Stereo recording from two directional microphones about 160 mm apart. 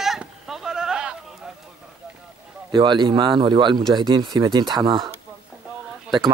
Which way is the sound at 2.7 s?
30° right (ahead or behind).